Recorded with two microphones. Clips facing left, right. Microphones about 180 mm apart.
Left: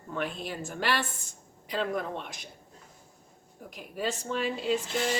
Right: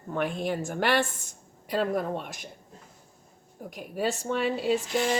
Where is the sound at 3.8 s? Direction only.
45° right (ahead or behind).